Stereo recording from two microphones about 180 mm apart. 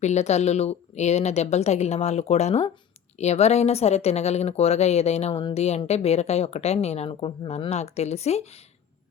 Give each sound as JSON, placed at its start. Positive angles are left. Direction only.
{"t": 0.0, "sound": "speech", "side_deg": 40}